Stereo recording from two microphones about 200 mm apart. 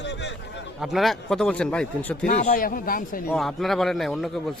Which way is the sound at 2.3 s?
40° left (ahead or behind).